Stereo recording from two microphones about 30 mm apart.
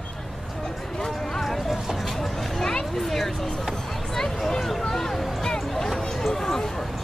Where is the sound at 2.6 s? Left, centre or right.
Centre.